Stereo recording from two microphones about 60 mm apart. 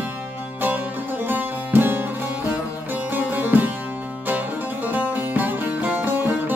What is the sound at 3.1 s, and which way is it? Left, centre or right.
Music, right.